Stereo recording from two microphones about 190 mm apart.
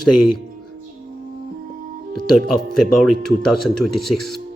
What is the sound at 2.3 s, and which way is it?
Speech, centre (ahead or behind).